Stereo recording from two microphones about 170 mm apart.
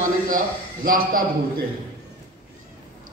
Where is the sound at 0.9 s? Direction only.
55° right (ahead or behind).